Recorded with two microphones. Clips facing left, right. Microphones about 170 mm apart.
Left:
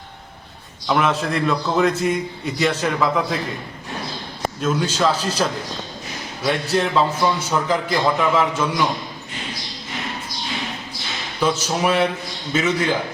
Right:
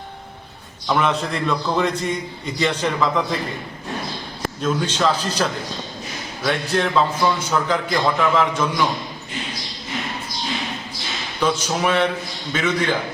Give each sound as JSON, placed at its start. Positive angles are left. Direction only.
{"t": 0.9, "sound": "a man's voice", "side_deg": 0}
{"t": 4.6, "sound": "a man's voice", "side_deg": 5}
{"t": 6.4, "sound": "a man's voice", "side_deg": 5}
{"t": 11.3, "sound": "a man's voice", "side_deg": 5}